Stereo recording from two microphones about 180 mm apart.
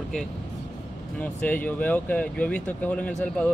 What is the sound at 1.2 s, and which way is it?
Speech, 10° left (ahead or behind).